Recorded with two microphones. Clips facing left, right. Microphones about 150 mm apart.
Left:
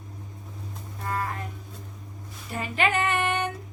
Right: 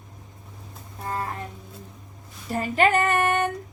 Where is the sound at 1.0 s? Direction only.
30° right (ahead or behind).